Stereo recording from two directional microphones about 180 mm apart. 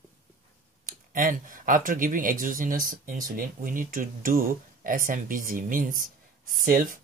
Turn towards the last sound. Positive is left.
turn(degrees=-50)  # may be behind; listen again after turning